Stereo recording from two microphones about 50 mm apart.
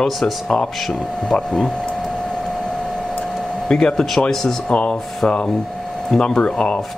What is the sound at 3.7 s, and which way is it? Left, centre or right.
Speech, centre.